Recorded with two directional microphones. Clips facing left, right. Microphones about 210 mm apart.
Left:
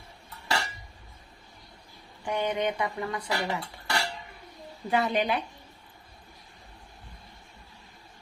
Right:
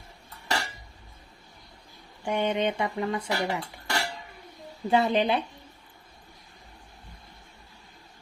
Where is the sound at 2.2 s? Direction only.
25° right (ahead or behind).